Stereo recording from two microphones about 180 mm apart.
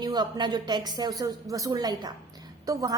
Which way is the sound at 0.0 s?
25° right (ahead or behind).